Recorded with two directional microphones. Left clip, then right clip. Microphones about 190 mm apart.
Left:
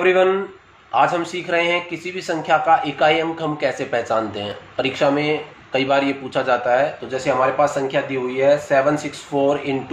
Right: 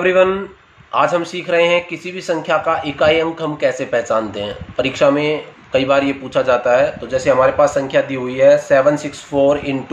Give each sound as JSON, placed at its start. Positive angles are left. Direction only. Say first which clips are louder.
{"t": 0.0, "sound": "speech", "louder": "right 2 dB", "side_deg": -20}